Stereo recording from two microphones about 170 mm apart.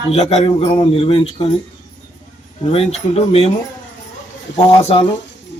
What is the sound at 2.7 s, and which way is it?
Speech, 35° left (ahead or behind).